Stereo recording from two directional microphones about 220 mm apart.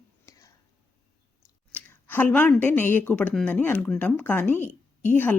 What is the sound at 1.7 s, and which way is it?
A woman's voice, 10° left (ahead or behind).